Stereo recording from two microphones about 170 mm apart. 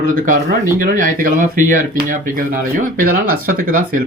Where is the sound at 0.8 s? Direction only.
55° right (ahead or behind).